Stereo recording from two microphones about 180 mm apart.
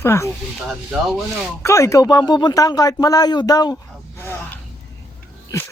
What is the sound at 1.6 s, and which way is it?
Speech, 15° left (ahead or behind).